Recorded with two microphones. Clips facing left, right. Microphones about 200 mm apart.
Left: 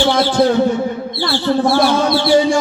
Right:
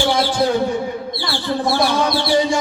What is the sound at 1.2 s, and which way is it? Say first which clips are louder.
Speech: left 8 dB; 60° left (ahead or behind).